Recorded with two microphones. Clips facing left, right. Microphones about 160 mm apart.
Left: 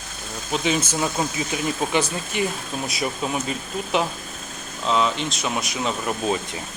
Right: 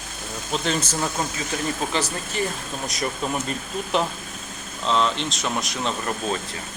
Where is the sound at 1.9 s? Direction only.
10° left (ahead or behind).